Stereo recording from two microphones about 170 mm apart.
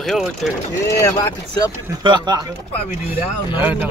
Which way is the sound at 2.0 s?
25° right (ahead or behind).